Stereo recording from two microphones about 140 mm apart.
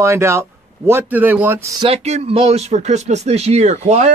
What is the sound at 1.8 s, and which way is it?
Speech, 45° right (ahead or behind).